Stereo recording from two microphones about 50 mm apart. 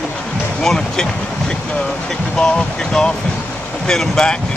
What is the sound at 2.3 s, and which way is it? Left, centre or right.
Speech, centre.